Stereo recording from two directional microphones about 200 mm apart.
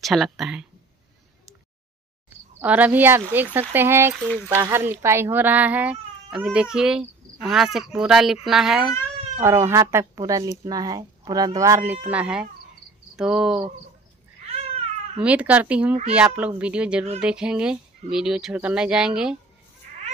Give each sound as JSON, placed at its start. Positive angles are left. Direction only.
{"t": 0.0, "sound": "speech", "side_deg": 0}
{"t": 2.2, "sound": "speech", "side_deg": -10}
{"t": 4.3, "sound": "speech", "side_deg": 5}
{"t": 4.6, "sound": "speech", "side_deg": -10}
{"t": 9.4, "sound": "speech", "side_deg": -15}
{"t": 14.4, "sound": "cat", "side_deg": -30}
{"t": 15.2, "sound": "speech", "side_deg": -5}